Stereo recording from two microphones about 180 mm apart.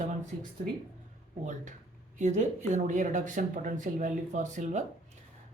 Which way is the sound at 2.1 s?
40° right (ahead or behind).